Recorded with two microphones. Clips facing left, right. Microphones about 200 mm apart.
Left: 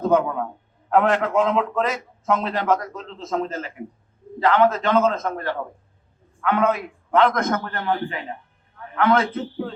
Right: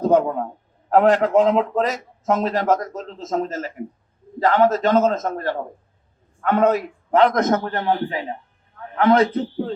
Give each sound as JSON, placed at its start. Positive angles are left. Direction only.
{"t": 0.0, "sound": "a man's voice", "side_deg": -35}